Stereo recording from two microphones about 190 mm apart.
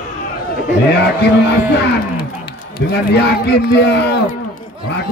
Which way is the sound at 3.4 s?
60° left (ahead or behind).